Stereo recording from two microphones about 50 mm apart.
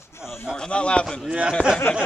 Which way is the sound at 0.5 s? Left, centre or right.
Centre.